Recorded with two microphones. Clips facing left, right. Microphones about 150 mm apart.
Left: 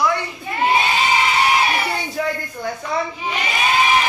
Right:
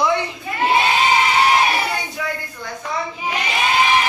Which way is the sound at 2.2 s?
35° left (ahead or behind).